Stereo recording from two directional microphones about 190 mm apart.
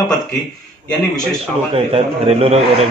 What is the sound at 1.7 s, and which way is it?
A man's voice, 30° right (ahead or behind).